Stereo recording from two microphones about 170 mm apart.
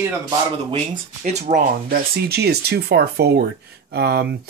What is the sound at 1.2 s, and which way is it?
Speech, 40° right (ahead or behind).